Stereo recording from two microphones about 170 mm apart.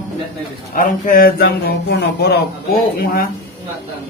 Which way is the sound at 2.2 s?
80° left.